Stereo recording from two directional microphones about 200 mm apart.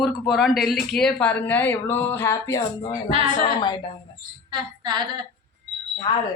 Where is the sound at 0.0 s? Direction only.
Centre (ahead or behind); by 3.8 s 20° left (ahead or behind).